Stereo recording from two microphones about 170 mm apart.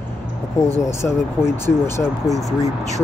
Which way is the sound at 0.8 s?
15° left (ahead or behind).